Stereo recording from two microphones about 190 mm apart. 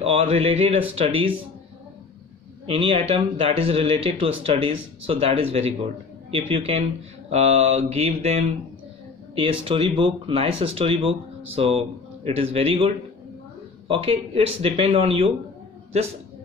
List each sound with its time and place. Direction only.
0.0 s speech: 30° right (ahead or behind)
2.6 s speech: 30° right (ahead or behind)